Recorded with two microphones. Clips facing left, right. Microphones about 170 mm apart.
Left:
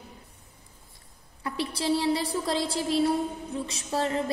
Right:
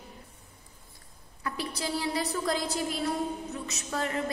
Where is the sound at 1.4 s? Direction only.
30° left (ahead or behind).